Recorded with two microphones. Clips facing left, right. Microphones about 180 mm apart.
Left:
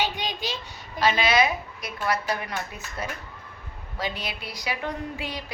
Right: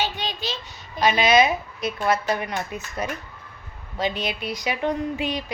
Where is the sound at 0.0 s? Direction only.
15° left (ahead or behind).